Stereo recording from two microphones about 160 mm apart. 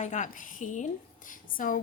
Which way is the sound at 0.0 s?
50° left (ahead or behind).